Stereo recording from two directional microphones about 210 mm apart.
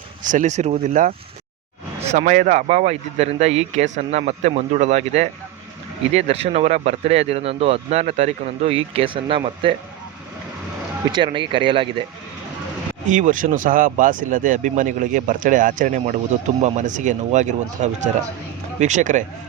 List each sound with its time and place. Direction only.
0.3 s speech: 35° right (ahead or behind)
2.1 s speech: 40° right (ahead or behind)
11.1 s speech: 25° right (ahead or behind)
13.1 s speech: 35° right (ahead or behind)